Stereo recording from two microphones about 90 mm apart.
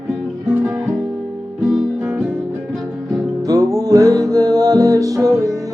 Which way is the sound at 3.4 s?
40° right (ahead or behind).